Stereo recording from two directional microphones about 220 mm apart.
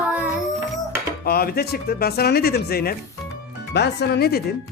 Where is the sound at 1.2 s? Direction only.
45° left (ahead or behind).